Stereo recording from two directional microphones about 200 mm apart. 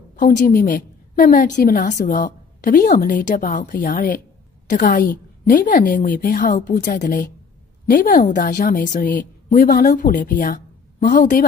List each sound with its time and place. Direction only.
0.1 s a woman's voice: 45° left (ahead or behind)